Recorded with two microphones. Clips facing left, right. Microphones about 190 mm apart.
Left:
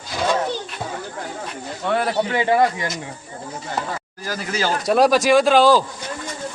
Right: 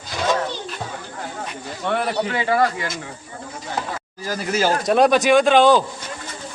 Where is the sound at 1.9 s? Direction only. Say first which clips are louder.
Left 2 dB; centre (ahead or behind).